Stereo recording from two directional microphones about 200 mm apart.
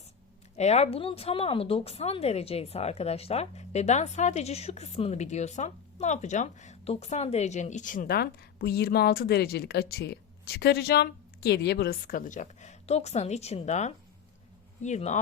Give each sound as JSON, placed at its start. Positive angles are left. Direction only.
{"t": 0.5, "sound": "speech", "side_deg": 35}